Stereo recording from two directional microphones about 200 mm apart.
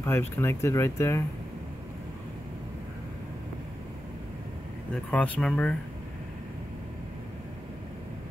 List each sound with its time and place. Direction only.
0.0 s speech: 10° left (ahead or behind)
5.1 s speech: 5° left (ahead or behind)